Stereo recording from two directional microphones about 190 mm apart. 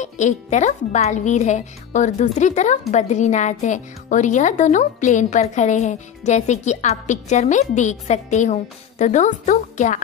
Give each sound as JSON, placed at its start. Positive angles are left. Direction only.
{"t": 0.0, "sound": "speech", "side_deg": 40}